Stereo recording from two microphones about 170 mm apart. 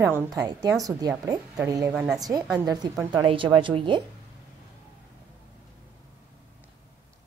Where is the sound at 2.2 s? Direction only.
20° right (ahead or behind).